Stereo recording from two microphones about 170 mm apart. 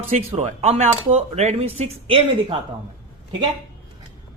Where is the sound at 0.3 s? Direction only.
40° right (ahead or behind).